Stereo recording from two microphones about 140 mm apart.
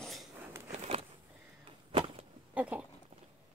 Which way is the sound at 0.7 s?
45° right (ahead or behind).